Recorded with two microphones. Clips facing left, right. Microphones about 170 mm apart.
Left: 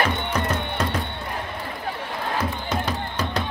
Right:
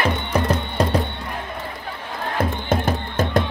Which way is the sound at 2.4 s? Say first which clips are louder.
Right 8 dB; 50° right (ahead or behind).